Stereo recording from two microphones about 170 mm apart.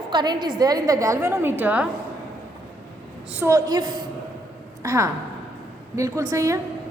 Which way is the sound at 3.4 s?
20° right (ahead or behind).